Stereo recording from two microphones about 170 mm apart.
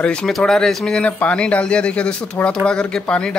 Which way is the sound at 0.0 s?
5° left (ahead or behind).